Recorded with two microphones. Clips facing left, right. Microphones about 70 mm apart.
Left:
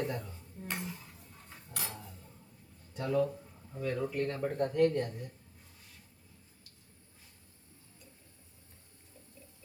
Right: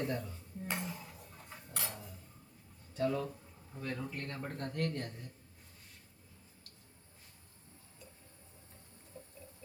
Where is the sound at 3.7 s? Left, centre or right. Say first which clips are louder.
Left 6 dB; centre.